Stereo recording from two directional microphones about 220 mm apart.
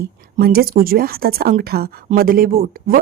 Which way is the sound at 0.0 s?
45° right (ahead or behind).